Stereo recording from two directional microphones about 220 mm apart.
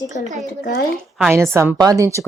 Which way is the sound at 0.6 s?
45° left (ahead or behind).